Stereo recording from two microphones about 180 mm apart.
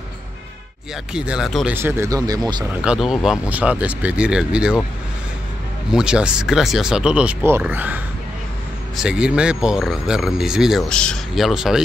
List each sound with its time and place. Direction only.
1.1 s speech: 5° right (ahead or behind)
1.8 s speech: 15° right (ahead or behind)
2.8 s speech: 5° right (ahead or behind)
5.9 s speech: 5° right (ahead or behind)